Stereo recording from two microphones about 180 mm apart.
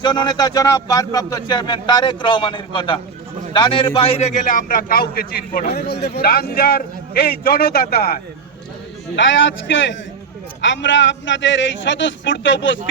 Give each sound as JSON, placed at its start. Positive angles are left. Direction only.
{"t": 0.0, "sound": "a man's voice", "side_deg": 25}
{"t": 9.1, "sound": "a man's voice", "side_deg": 90}